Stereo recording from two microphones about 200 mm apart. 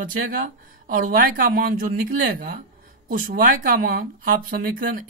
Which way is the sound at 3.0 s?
45° right (ahead or behind).